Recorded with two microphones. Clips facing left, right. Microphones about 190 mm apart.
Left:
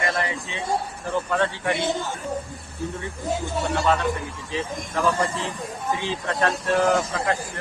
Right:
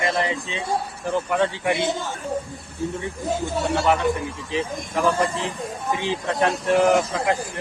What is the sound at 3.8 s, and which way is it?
Speech, 15° right (ahead or behind).